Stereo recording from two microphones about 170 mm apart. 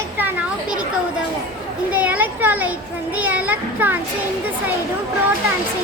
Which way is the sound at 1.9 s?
10° right (ahead or behind).